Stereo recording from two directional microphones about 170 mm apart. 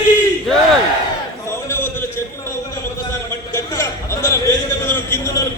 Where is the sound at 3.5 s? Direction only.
15° left (ahead or behind).